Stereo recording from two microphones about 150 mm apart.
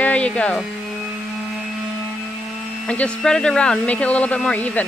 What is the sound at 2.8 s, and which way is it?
Speech, 10° left (ahead or behind).